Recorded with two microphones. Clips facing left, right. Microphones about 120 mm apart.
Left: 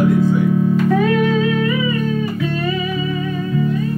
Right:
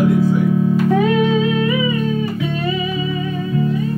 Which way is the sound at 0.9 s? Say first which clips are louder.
Even; 20° right (ahead or behind).